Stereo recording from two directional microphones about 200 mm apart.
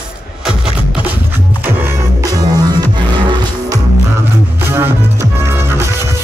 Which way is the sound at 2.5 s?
20° right (ahead or behind).